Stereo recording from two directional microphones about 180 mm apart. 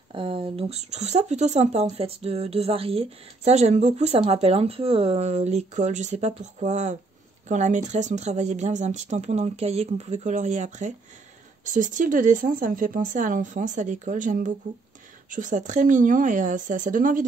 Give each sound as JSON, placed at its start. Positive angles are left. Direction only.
{"t": 0.1, "sound": "speech", "side_deg": -30}